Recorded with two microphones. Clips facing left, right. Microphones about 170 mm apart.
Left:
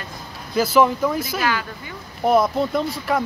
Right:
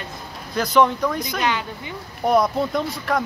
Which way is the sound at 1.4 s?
20° right (ahead or behind).